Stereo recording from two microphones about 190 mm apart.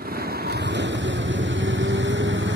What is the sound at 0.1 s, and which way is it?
Vehicle, 55° right (ahead or behind).